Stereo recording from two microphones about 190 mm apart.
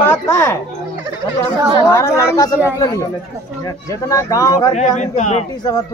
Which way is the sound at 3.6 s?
20° left (ahead or behind).